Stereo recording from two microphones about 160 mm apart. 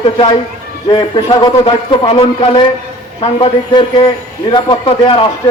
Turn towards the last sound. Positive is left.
turn(degrees=35)  # may be behind; listen again after turning